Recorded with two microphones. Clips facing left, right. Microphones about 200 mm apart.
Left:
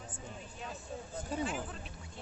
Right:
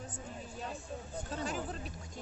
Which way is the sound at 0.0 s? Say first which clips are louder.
Right 2 dB; 40° right (ahead or behind).